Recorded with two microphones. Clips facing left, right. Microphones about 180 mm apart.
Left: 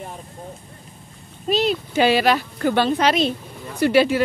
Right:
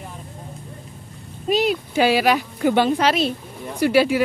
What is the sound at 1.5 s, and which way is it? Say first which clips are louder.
Speech: right 1 dB; 10° right (ahead or behind).